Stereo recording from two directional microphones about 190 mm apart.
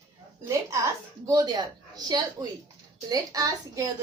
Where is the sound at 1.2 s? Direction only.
20° right (ahead or behind).